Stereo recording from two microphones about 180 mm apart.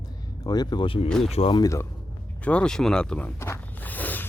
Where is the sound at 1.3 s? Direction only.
30° left (ahead or behind).